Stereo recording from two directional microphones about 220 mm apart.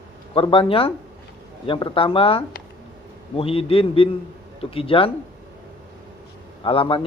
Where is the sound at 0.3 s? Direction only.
25° left (ahead or behind).